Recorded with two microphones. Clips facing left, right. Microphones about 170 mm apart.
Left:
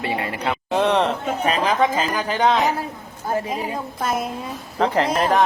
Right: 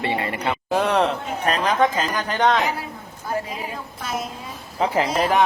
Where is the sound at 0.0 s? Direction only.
Centre (ahead or behind).